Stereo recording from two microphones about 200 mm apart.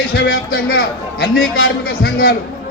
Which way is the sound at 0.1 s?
75° left (ahead or behind).